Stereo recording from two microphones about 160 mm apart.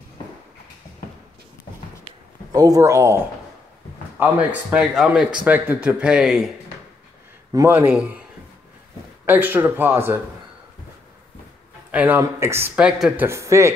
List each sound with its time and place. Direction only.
2.5 s speech: 20° right (ahead or behind)
4.2 s speech: 10° right (ahead or behind)
7.5 s speech: 15° right (ahead or behind)
9.2 s speech: 15° right (ahead or behind)
11.9 s a man's voice: 10° right (ahead or behind)